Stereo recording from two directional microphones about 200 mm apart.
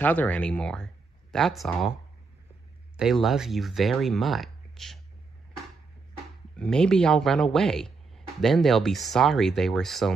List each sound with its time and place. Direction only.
0.0 s speech: 10° left (ahead or behind)
3.0 s speech: centre (ahead or behind)
6.5 s speech: 5° left (ahead or behind)